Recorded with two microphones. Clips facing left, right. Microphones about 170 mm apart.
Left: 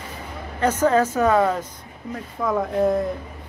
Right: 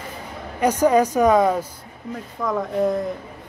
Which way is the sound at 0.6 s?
15° right (ahead or behind).